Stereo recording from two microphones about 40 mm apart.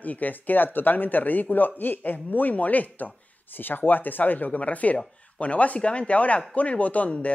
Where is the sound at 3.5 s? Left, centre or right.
Left.